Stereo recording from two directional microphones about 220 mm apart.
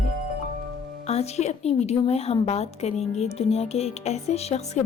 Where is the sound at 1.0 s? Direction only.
30° left (ahead or behind).